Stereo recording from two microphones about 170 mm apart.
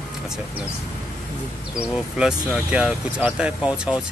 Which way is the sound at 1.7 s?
5° right (ahead or behind).